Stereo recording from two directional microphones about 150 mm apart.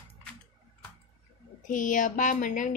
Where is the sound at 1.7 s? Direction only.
60° left (ahead or behind).